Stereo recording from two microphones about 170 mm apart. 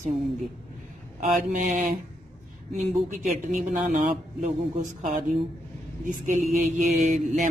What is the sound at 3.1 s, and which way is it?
Speech, 50° right (ahead or behind).